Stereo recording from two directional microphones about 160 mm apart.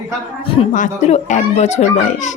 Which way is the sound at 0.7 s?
50° left (ahead or behind).